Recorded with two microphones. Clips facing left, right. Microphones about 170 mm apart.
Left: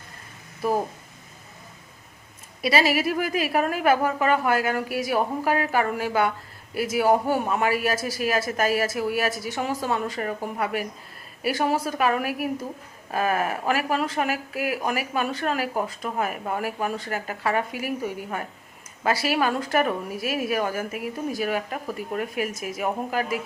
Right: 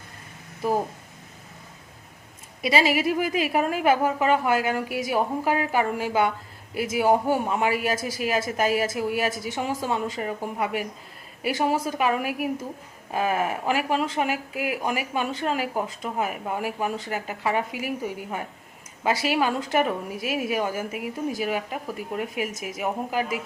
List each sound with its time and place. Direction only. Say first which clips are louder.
2.6 s a woman's voice: even; 20° right (ahead or behind)